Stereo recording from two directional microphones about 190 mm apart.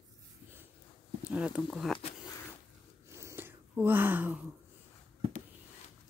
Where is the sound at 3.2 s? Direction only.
15° right (ahead or behind).